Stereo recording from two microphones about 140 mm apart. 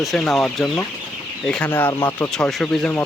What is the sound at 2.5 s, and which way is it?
Speech, centre (ahead or behind).